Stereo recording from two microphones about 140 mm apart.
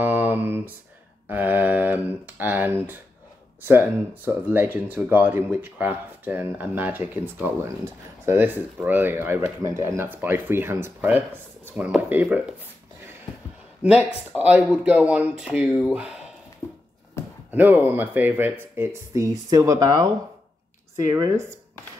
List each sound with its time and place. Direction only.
0.0 s a sound: 15° right (ahead or behind)
3.6 s speech: 15° right (ahead or behind)
13.8 s speech: 10° right (ahead or behind)
16.6 s a sound: 20° left (ahead or behind)
17.5 s speech: 10° right (ahead or behind)
21.1 s speech: 25° right (ahead or behind)